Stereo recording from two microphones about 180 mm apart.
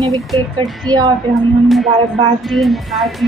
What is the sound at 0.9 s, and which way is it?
Child singing, 25° right (ahead or behind).